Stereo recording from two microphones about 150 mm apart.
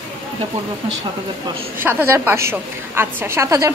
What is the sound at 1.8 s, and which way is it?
A woman's voice, 15° right (ahead or behind).